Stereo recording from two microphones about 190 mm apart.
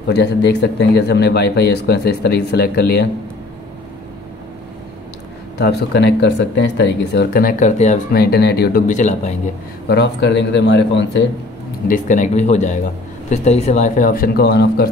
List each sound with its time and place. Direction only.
0.1 s a man's voice: 65° left (ahead or behind)
5.6 s a man's voice: 60° left (ahead or behind); by 8.2 s 40° left (ahead or behind)
8.2 s speech: 60° left (ahead or behind); by 9.3 s 40° left (ahead or behind)
9.8 s a man's voice: 65° left (ahead or behind)
11.9 s speech: 40° left (ahead or behind); by 14.9 s 55° left (ahead or behind)